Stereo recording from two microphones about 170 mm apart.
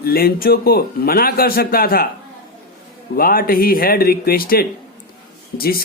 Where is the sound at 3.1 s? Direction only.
60° left (ahead or behind).